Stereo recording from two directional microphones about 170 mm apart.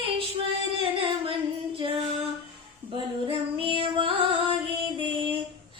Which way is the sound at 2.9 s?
30° right (ahead or behind).